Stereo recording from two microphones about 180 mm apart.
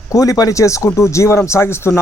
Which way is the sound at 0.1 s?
20° left (ahead or behind).